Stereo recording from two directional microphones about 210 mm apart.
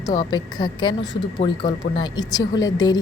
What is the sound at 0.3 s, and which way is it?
A woman's voice, 20° left (ahead or behind).